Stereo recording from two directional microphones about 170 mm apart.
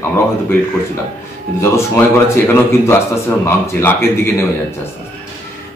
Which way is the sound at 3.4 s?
15° left (ahead or behind).